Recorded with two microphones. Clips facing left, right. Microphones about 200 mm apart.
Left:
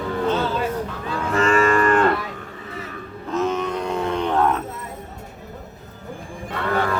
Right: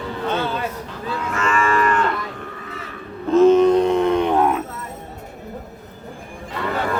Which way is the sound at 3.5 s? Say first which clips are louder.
Right 11 dB; 30° right (ahead or behind).